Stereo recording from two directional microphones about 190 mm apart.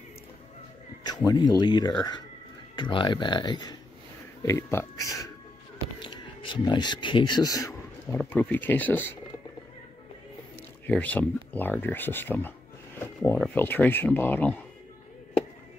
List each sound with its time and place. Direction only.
1.0 s speech: 20° left (ahead or behind)
5.9 s a sound: 25° left (ahead or behind)
8.2 s speech: 10° left (ahead or behind)
10.9 s speech: 10° left (ahead or behind)